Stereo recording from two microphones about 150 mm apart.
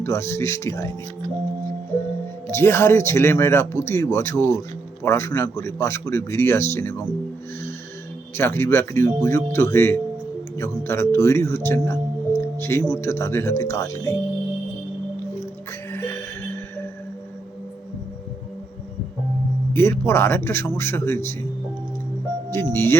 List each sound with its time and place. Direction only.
0.0 s speech: 20° left (ahead or behind)
2.5 s speech: 15° left (ahead or behind)
8.4 s speech: 15° left (ahead or behind)
11.9 s music: 15° left (ahead or behind)
12.9 s speech: 20° left (ahead or behind)
15.9 s music: 15° left (ahead or behind)
19.7 s speech: 15° left (ahead or behind)
22.4 s speech: 15° left (ahead or behind)